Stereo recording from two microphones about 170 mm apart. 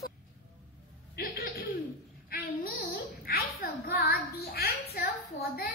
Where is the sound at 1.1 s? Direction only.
60° left (ahead or behind).